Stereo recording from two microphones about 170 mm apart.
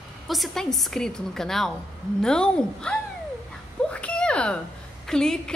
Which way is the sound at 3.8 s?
5° left (ahead or behind).